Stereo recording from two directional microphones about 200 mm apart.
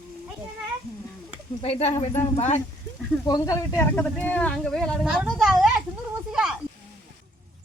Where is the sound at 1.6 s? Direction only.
30° left (ahead or behind).